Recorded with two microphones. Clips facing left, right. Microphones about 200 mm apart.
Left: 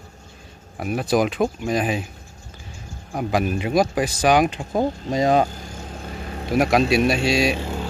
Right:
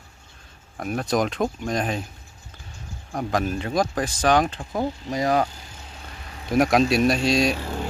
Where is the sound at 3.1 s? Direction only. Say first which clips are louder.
Left 3 dB; 10° left (ahead or behind).